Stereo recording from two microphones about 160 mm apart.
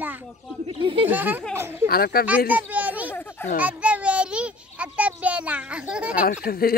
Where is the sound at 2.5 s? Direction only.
10° right (ahead or behind).